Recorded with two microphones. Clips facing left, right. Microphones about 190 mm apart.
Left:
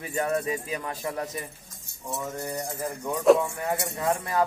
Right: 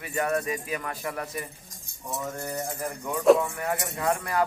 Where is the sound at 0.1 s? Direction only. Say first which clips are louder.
Even; 25° left (ahead or behind).